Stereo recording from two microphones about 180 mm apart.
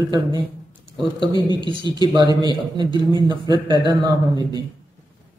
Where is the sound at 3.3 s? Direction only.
25° right (ahead or behind).